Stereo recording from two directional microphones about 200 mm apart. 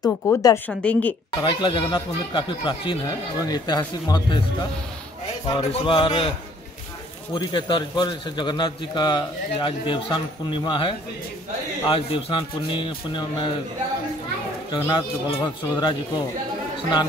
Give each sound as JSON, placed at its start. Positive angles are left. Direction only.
{"t": 0.0, "sound": "a man's voice", "side_deg": 20}
{"t": 0.7, "sound": "a woman's voice", "side_deg": 5}
{"t": 1.4, "sound": "a man's voice", "side_deg": 25}
{"t": 5.5, "sound": "a man's voice", "side_deg": 25}
{"t": 7.3, "sound": "a man's voice", "side_deg": 25}
{"t": 14.7, "sound": "a man's voice", "side_deg": 20}